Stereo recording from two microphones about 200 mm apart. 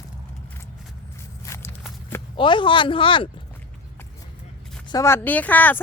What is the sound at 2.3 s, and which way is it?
Speech, 25° left (ahead or behind).